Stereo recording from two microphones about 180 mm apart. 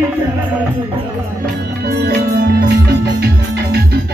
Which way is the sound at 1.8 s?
60° right (ahead or behind).